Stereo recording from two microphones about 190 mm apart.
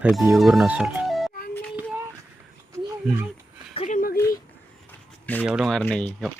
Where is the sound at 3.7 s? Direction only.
40° left (ahead or behind).